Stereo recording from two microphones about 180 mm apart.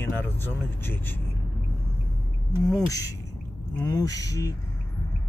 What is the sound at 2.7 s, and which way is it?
Speech, 20° left (ahead or behind).